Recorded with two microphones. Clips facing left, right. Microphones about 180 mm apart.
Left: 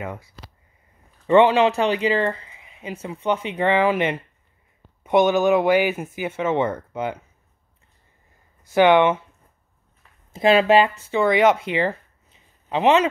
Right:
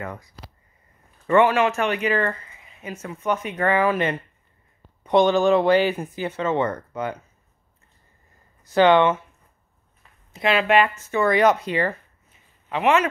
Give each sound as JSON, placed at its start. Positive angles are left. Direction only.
{"t": 1.2, "sound": "a man's voice", "side_deg": 20}
{"t": 1.7, "sound": "speech", "side_deg": 30}
{"t": 8.7, "sound": "speech", "side_deg": 15}
{"t": 10.4, "sound": "speech", "side_deg": 30}
{"t": 11.1, "sound": "speech", "side_deg": 15}